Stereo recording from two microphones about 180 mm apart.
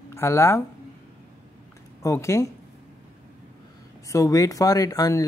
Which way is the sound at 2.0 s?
15° left (ahead or behind).